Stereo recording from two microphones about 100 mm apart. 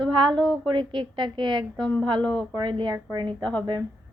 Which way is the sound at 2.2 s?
10° left (ahead or behind).